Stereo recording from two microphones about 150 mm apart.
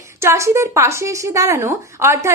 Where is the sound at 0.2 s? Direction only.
20° right (ahead or behind).